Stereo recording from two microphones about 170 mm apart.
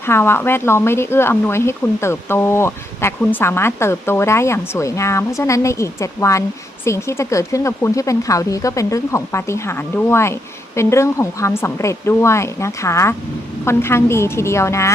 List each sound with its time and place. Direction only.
0.0 s speech: 15° left (ahead or behind)